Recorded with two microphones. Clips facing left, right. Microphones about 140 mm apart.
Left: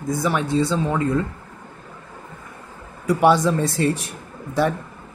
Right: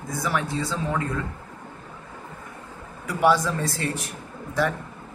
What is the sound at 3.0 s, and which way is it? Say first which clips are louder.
Speech: left 5 dB; 20° left (ahead or behind).